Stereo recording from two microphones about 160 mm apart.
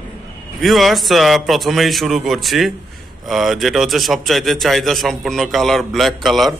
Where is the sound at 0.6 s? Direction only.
Centre (ahead or behind).